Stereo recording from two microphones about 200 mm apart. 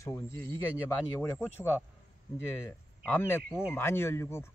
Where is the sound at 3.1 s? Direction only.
10° left (ahead or behind).